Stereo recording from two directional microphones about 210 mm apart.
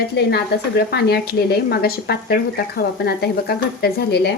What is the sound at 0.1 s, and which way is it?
A woman's voice, 50° left (ahead or behind).